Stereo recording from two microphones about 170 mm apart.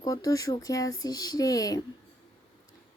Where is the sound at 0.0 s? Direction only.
20° left (ahead or behind).